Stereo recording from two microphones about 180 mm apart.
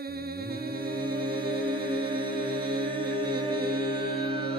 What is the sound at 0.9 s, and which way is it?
Music, 55° right (ahead or behind).